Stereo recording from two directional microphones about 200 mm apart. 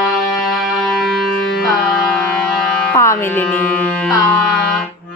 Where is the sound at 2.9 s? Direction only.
15° left (ahead or behind).